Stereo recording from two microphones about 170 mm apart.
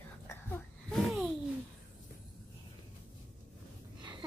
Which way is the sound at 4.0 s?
25° right (ahead or behind).